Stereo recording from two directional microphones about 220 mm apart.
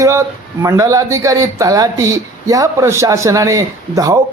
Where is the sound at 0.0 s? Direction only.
15° right (ahead or behind).